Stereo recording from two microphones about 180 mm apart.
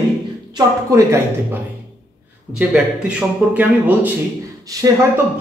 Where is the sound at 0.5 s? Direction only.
15° right (ahead or behind).